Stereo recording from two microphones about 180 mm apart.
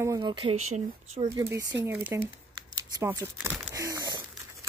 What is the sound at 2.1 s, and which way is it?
Speech, 10° right (ahead or behind).